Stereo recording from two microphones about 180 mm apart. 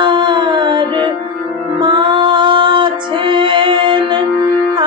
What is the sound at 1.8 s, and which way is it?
Music, 25° right (ahead or behind).